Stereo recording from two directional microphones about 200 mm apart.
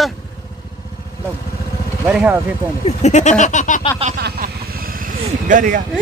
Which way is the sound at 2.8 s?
35° left (ahead or behind).